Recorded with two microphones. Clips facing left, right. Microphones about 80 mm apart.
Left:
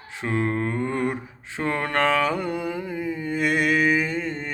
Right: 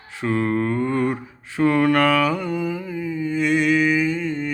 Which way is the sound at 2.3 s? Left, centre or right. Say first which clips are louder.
Right 2 dB; left.